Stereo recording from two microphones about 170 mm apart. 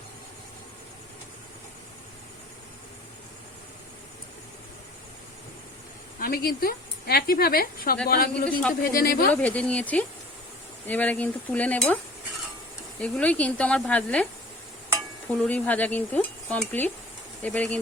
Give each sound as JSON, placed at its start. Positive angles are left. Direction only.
{"t": 6.1, "sound": "speech", "side_deg": 60}
{"t": 9.3, "sound": "cutlery", "side_deg": 10}
{"t": 13.0, "sound": "cutlery", "side_deg": 5}
{"t": 15.4, "sound": "cutlery", "side_deg": 10}